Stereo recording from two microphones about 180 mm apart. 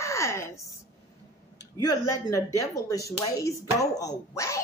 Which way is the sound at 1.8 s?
20° left (ahead or behind).